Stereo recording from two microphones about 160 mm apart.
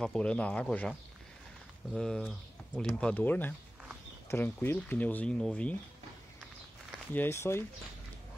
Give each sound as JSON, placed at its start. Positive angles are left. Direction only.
{"t": 0.0, "sound": "speech", "side_deg": 5}
{"t": 2.0, "sound": "speech", "side_deg": 5}
{"t": 7.2, "sound": "speech", "side_deg": 15}